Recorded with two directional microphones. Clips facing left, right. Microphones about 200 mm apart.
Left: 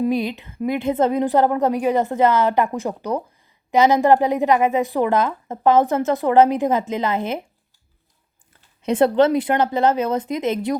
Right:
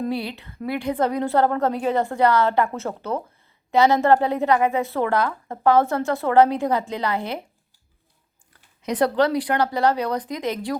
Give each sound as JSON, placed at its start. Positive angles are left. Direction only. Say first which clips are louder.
{"t": 0.0, "sound": "a woman's voice", "louder": "left 5 dB", "side_deg": 15}
{"t": 8.8, "sound": "a woman's voice", "louder": "left 4 dB", "side_deg": 25}